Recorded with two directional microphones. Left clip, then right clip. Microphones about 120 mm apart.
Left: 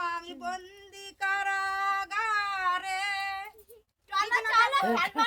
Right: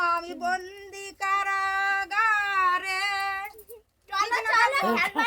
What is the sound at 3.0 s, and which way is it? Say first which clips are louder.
Female singing: right 4 dB; 25° left (ahead or behind).